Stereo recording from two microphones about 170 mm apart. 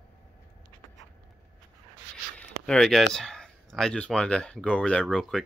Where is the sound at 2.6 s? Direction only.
5° left (ahead or behind).